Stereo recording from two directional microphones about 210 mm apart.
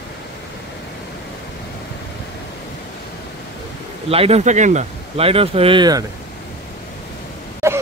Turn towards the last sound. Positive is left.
turn(degrees=-15)  # may be behind; listen again after turning